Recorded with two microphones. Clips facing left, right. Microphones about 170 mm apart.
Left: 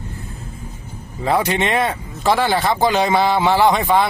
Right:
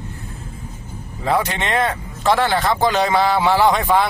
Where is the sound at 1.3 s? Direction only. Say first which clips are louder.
Left 2 dB; 10° left (ahead or behind).